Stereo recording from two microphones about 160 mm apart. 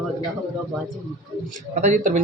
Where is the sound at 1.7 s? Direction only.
50° right (ahead or behind).